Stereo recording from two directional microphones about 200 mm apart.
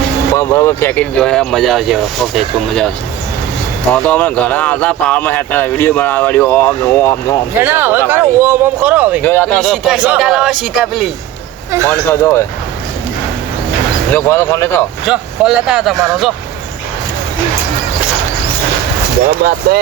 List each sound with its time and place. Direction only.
0.3 s speech: 15° left (ahead or behind)
3.9 s speech: 5° left (ahead or behind)
7.6 s speech: 10° right (ahead or behind)
9.2 s speech: 10° left (ahead or behind)
11.7 s speech: 15° right (ahead or behind)
12.0 s speech: 10° left (ahead or behind)
14.1 s speech: 10° left (ahead or behind)
15.0 s speech: 5° right (ahead or behind)
19.4 s speech: 50° right (ahead or behind)